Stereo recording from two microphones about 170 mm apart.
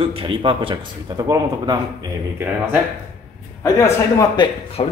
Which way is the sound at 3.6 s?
20° left (ahead or behind).